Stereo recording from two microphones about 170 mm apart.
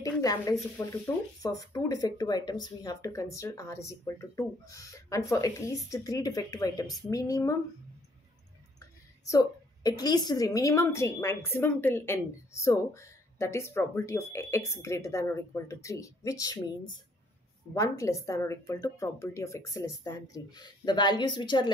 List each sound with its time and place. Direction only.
0.0 s speech: 20° left (ahead or behind)
9.3 s speech: 20° left (ahead or behind)